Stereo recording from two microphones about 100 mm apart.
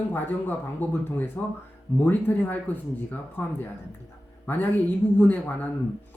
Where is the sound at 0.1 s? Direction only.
20° left (ahead or behind).